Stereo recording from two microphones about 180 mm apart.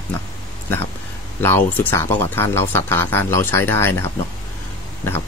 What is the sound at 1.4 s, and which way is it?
Speech, 10° left (ahead or behind).